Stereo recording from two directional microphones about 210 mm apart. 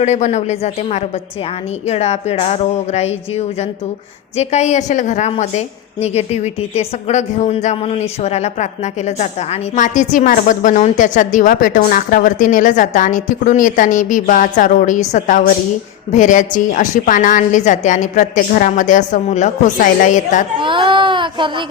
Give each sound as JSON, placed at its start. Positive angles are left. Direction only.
{"t": 0.0, "sound": "a woman's voice", "side_deg": 35}
{"t": 20.6, "sound": "speech", "side_deg": -25}